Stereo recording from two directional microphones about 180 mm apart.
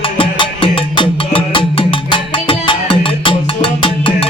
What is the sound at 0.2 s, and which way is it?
Music, 30° left (ahead or behind).